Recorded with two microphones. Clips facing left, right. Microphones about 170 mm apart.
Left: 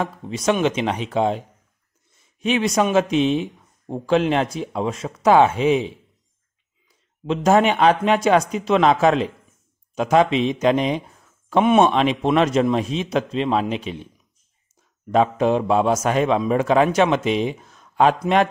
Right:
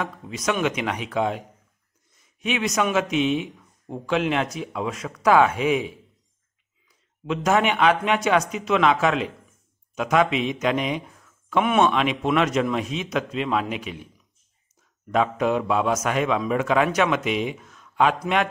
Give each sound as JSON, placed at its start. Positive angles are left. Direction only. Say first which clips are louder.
{"t": 0.0, "sound": "speech", "louder": "left 5 dB", "side_deg": 30}
{"t": 15.0, "sound": "speech", "louder": "left 4 dB", "side_deg": 30}